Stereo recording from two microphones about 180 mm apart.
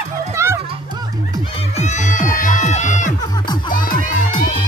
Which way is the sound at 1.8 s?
40° left (ahead or behind).